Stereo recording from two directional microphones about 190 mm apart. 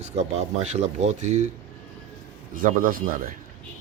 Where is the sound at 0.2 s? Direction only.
35° right (ahead or behind).